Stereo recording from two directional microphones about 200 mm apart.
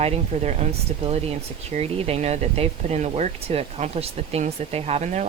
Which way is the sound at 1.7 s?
30° right (ahead or behind).